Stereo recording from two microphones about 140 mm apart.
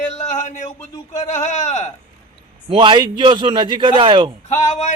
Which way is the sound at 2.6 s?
35° right (ahead or behind).